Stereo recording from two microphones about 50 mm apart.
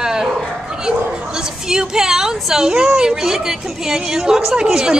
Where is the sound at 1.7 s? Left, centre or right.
Centre.